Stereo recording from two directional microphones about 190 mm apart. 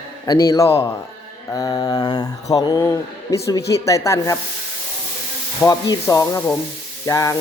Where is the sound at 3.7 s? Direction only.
15° left (ahead or behind).